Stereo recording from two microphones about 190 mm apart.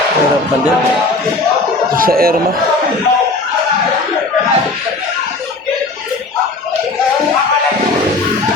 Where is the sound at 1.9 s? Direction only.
50° right (ahead or behind).